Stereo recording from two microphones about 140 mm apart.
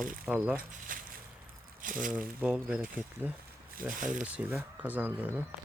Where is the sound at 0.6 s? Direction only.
80° right.